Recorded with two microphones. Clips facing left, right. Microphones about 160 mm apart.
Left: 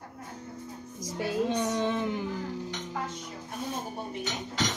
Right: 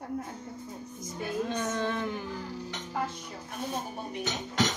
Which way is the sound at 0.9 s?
90° left.